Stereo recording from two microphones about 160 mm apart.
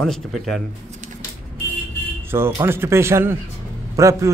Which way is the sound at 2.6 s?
15° right (ahead or behind).